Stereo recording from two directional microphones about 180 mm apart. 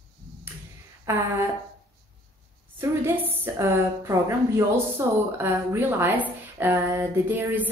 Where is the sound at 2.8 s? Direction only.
10° right (ahead or behind).